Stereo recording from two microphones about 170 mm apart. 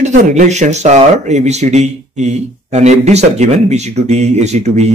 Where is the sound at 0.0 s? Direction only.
45° right (ahead or behind).